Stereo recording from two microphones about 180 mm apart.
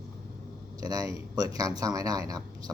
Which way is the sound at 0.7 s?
20° right (ahead or behind).